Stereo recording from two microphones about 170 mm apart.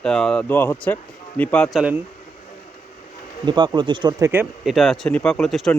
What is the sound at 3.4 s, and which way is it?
Speech, 25° right (ahead or behind).